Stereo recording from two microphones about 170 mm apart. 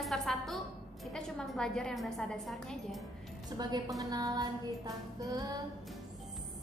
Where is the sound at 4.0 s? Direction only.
20° right (ahead or behind).